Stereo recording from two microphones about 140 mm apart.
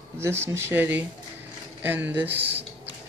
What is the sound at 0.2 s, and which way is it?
Speech, 20° right (ahead or behind).